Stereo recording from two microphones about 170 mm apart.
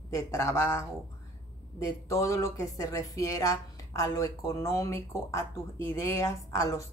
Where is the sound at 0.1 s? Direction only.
15° left (ahead or behind).